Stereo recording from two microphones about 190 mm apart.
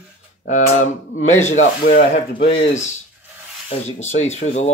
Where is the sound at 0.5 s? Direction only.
40° left (ahead or behind).